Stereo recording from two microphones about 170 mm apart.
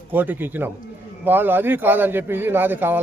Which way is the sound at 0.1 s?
10° right (ahead or behind).